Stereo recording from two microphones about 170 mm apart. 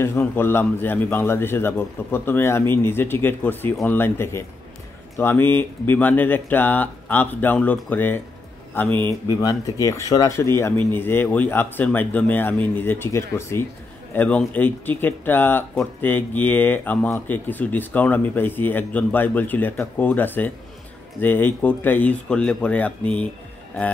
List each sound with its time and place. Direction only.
0.0 s speech: 15° left (ahead or behind)
9.3 s speech: 20° left (ahead or behind)